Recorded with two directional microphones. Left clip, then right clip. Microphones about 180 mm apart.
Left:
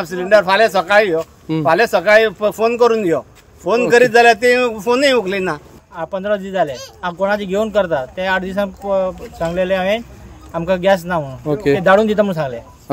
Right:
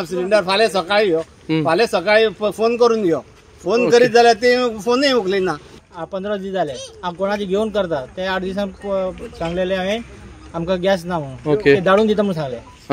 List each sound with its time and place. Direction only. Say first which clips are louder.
0.0 s speech: left 4 dB; 10° right (ahead or behind); by 4.4 s 10° left (ahead or behind)
4.4 s speech: left 2 dB; 35° left (ahead or behind)
4.8 s speech: left 3 dB; 15° left (ahead or behind)
5.9 s speech: left 5 dB; centre (ahead or behind)